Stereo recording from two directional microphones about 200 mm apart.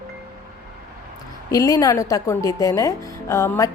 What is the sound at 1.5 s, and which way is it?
A woman's voice, 15° left (ahead or behind).